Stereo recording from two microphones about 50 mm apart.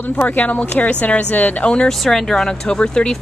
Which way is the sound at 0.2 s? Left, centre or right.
Left.